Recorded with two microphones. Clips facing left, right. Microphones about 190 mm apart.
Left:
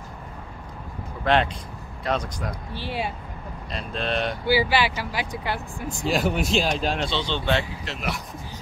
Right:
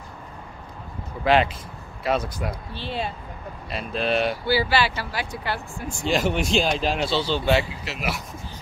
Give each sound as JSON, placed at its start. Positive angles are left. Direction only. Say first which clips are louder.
{"t": 1.2, "sound": "speech", "louder": "right 2 dB", "side_deg": -5}
{"t": 2.7, "sound": "speech", "louder": "left 3 dB", "side_deg": 10}
{"t": 3.7, "sound": "speech", "louder": "right 3 dB", "side_deg": -5}
{"t": 4.5, "sound": "speech", "louder": "left 4 dB", "side_deg": 15}
{"t": 6.0, "sound": "speech", "louder": "right 1 dB", "side_deg": 0}